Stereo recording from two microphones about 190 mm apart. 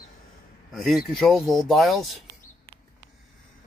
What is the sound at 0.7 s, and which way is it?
Speech, centre (ahead or behind).